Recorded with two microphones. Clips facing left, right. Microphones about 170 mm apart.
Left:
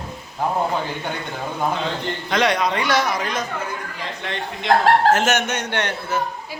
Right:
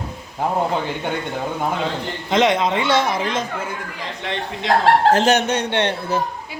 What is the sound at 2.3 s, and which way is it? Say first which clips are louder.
Speech: right 3 dB; 20° right (ahead or behind).